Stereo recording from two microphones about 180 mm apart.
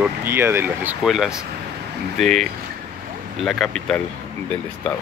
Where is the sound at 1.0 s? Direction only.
Centre (ahead or behind).